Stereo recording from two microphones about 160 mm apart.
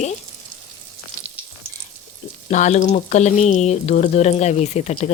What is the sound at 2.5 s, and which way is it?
Speech, 50° left (ahead or behind).